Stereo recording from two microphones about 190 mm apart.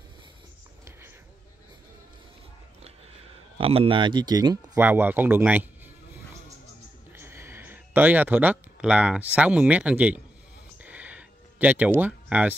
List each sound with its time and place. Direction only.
3.5 s speech: 30° right (ahead or behind)
4.7 s speech: 10° right (ahead or behind)
7.1 s speech: 10° right (ahead or behind)
10.8 s a sound: 10° right (ahead or behind)